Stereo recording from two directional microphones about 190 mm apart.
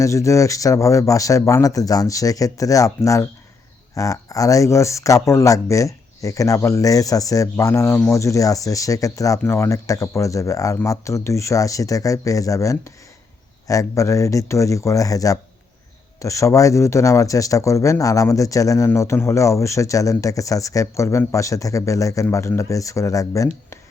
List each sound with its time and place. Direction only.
0.0 s speech: 15° left (ahead or behind)